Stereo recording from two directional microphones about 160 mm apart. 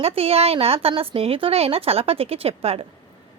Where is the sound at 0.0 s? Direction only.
40° right (ahead or behind).